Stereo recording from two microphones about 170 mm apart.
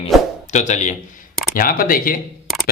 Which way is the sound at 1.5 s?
55° left (ahead or behind).